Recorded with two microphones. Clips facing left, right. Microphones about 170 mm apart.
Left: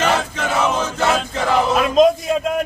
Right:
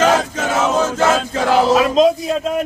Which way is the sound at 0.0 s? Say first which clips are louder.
Right 4 dB; 45° right (ahead or behind).